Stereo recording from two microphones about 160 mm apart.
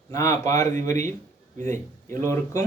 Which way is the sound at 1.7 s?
55° right (ahead or behind).